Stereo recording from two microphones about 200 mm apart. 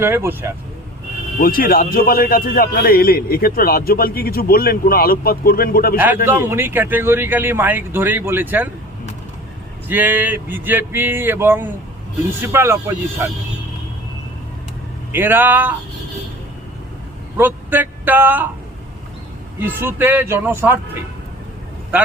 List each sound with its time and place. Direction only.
0.0 s a man's voice: 10° right (ahead or behind)
1.4 s a man's voice: 45° left (ahead or behind)
6.2 s a man's voice: 10° right (ahead or behind)
9.9 s a man's voice: 10° right (ahead or behind)
15.1 s a man's voice: 10° right (ahead or behind)
17.3 s speech: 10° right (ahead or behind)
19.5 s a man's voice: 10° right (ahead or behind)